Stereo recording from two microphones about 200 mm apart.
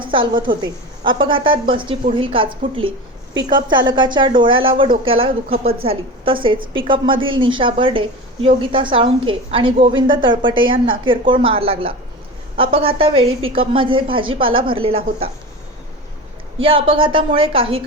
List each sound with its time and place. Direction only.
0.0 s a woman's voice: 25° right (ahead or behind)
16.6 s a woman's voice: 25° right (ahead or behind)